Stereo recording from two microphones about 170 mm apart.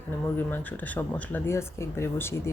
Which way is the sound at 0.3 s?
10° left (ahead or behind).